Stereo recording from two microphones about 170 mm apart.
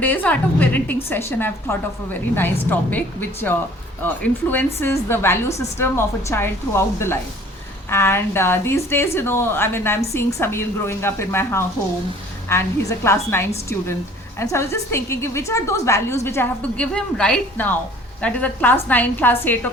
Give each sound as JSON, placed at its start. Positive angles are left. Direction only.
{"t": 0.0, "sound": "a woman's voice", "side_deg": 10}